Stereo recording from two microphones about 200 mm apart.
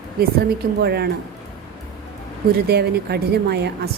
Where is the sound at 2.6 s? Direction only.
55° right (ahead or behind).